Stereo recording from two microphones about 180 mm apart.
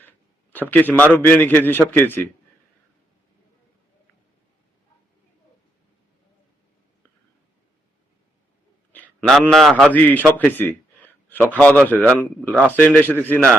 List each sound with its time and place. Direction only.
0.7 s a man's voice: 10° left (ahead or behind)
8.9 s a man's voice: 10° left (ahead or behind)